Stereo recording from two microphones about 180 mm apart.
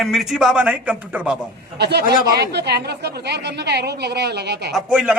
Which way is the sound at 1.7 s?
65° right (ahead or behind).